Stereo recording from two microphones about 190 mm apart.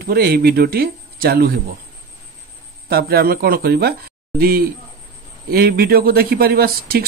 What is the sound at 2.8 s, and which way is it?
Speech, 50° right (ahead or behind).